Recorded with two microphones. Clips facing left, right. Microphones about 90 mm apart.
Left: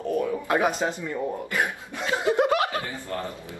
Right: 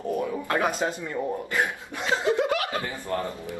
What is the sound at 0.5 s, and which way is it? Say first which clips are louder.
Speech: left 1 dB; 20° left (ahead or behind).